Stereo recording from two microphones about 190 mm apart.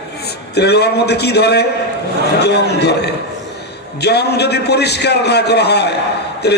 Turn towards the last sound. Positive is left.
turn(degrees=60)  # may be behind; listen again after turning